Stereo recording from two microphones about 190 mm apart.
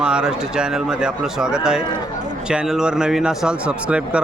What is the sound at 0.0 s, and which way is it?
Speech, 5° right (ahead or behind).